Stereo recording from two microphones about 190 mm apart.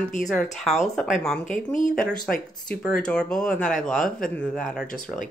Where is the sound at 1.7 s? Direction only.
45° left (ahead or behind).